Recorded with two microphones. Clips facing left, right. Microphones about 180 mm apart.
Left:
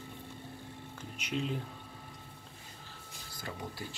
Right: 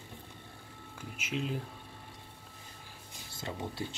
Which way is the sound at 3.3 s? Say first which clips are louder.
Right 3 dB; 25° right (ahead or behind).